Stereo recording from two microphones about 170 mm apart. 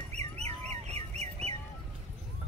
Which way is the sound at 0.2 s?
40° right (ahead or behind).